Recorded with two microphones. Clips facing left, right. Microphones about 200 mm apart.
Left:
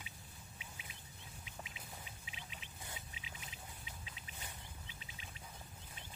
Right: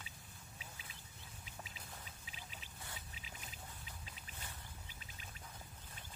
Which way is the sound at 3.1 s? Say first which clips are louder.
Left 1 dB; 40° right (ahead or behind).